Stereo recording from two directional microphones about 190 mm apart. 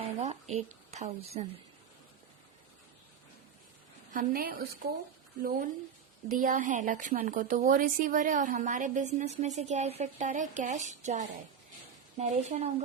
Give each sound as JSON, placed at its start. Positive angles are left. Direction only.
{"t": 0.2, "sound": "speech", "side_deg": -35}
{"t": 4.1, "sound": "a woman's voice", "side_deg": -50}